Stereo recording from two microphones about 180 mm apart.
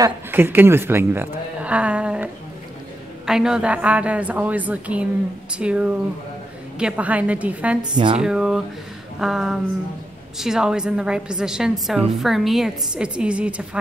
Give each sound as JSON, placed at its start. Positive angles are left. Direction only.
{"t": 0.0, "sound": "speech", "side_deg": -10}
{"t": 3.3, "sound": "a woman's voice", "side_deg": -5}
{"t": 7.9, "sound": "speech", "side_deg": -25}
{"t": 8.2, "sound": "a woman's voice", "side_deg": -5}